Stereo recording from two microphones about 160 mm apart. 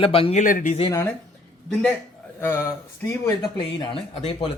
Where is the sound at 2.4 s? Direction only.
15° left (ahead or behind).